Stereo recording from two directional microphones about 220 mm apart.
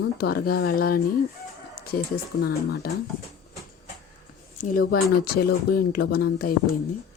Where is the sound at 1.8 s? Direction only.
45° left (ahead or behind).